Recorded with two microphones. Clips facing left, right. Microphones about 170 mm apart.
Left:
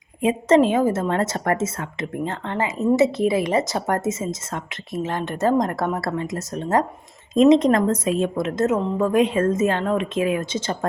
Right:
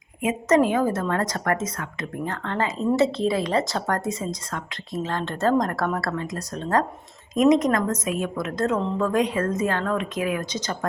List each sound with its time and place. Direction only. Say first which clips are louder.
0.2 s a woman's voice: left 3 dB; 30° left (ahead or behind)